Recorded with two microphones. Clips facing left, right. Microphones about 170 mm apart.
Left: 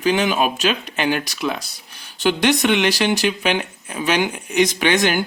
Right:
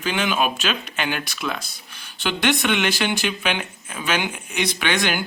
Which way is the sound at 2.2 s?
40° left (ahead or behind).